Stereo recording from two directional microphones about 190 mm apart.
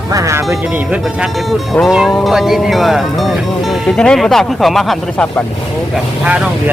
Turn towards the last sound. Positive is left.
turn(degrees=-5)  # may be behind; listen again after turning